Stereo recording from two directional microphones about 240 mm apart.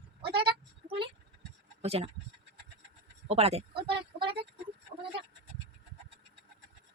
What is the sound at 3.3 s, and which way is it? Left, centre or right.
Speech, right.